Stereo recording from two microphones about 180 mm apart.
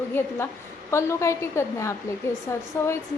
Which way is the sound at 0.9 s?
15° left (ahead or behind).